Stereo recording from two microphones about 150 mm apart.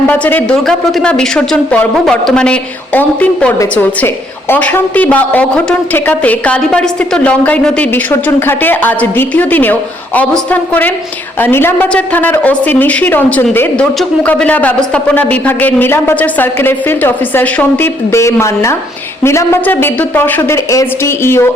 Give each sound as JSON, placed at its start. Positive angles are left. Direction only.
{"t": 0.1, "sound": "a woman's voice", "side_deg": 10}